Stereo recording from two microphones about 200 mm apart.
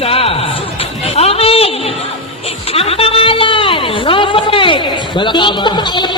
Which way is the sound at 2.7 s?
30° left (ahead or behind).